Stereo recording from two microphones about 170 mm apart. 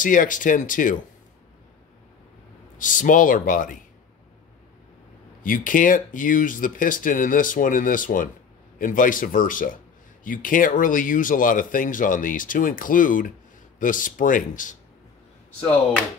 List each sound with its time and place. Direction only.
0.0 s speech: 50° left (ahead or behind)
2.8 s speech: 50° left (ahead or behind)
5.4 s speech: 55° left (ahead or behind)